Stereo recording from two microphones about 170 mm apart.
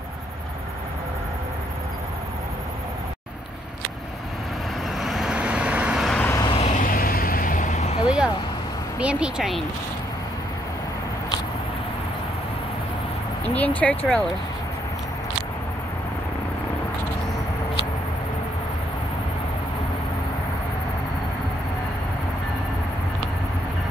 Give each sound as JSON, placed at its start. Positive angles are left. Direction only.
{"t": 4.9, "sound": "vehicle", "side_deg": 0}
{"t": 6.2, "sound": "vehicle", "side_deg": 20}
{"t": 6.5, "sound": "vehicle", "side_deg": 45}
{"t": 9.0, "sound": "speech", "side_deg": -5}
{"t": 13.6, "sound": "speech", "side_deg": 10}